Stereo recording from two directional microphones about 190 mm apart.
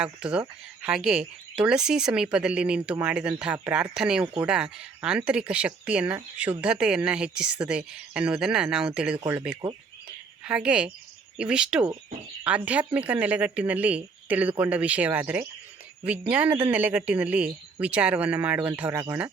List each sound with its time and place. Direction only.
0.0 s a woman's voice: 5° right (ahead or behind)